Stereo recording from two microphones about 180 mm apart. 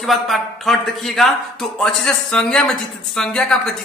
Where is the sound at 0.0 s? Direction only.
Centre (ahead or behind).